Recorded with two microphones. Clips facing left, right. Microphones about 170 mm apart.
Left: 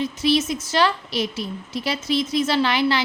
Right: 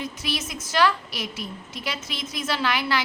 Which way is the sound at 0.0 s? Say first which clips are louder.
Left 10 dB; 30° left (ahead or behind).